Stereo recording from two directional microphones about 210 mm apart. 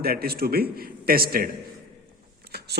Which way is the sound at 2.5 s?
50° right (ahead or behind).